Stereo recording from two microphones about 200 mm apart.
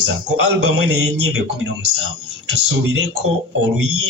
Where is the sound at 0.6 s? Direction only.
65° right (ahead or behind).